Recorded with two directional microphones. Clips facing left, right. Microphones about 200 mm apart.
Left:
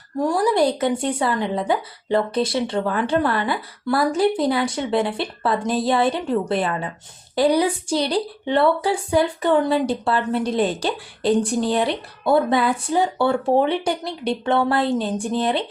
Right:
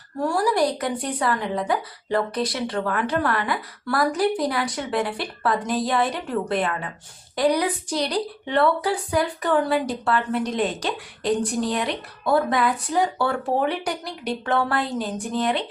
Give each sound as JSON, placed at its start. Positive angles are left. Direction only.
{"t": 0.2, "sound": "a woman's voice", "side_deg": 20}